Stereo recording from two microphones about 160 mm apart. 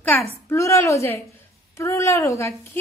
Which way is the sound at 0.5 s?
20° left (ahead or behind).